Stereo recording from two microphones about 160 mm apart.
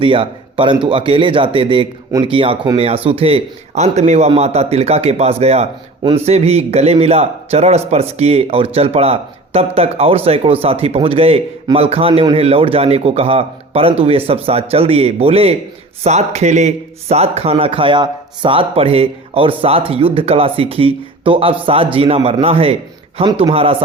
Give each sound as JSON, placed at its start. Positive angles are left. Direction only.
{"t": 0.0, "sound": "speech", "side_deg": -35}